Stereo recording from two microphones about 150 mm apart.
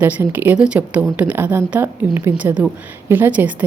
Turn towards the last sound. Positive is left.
turn(degrees=-10)  # may be behind; listen again after turning